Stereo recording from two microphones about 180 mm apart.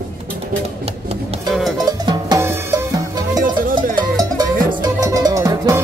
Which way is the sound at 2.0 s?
25° right (ahead or behind).